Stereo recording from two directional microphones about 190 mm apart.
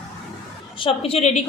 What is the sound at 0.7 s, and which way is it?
Speech, 30° left (ahead or behind).